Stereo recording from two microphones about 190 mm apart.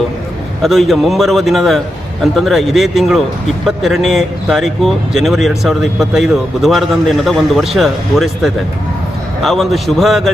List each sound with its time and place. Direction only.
0.6 s speech: centre (ahead or behind)